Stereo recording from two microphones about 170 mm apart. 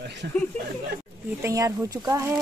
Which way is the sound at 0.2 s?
70° right (ahead or behind).